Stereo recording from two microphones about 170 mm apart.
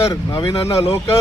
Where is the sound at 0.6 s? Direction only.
15° left (ahead or behind).